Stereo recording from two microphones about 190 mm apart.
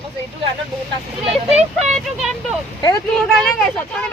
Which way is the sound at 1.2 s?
35° right (ahead or behind).